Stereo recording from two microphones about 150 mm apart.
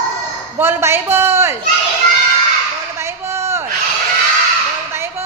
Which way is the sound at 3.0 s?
15° right (ahead or behind).